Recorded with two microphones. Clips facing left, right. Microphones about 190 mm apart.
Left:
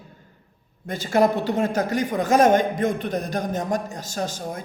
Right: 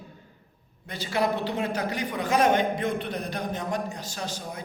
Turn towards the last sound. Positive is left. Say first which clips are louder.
# left 6 dB
turn(degrees=45)  # may be behind; listen again after turning